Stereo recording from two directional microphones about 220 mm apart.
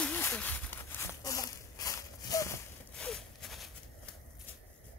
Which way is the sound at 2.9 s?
Centre (ahead or behind).